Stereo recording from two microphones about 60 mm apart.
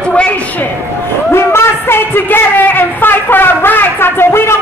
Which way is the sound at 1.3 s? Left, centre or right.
Left.